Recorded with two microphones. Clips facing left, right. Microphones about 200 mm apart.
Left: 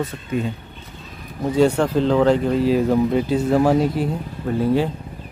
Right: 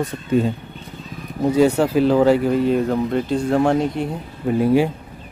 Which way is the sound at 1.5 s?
5° right (ahead or behind).